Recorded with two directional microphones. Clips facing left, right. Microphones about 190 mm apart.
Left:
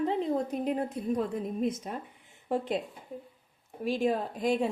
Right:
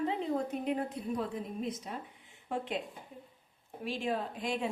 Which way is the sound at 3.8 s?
40° left (ahead or behind).